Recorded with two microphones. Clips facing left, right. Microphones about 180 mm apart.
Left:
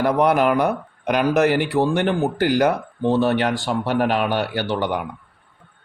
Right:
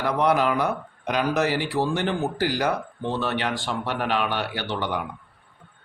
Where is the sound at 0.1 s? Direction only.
50° left (ahead or behind).